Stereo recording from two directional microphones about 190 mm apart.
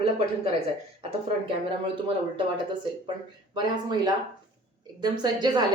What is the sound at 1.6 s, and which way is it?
Speech, 25° right (ahead or behind).